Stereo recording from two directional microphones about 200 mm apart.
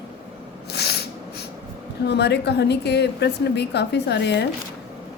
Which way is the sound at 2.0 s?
55° left (ahead or behind).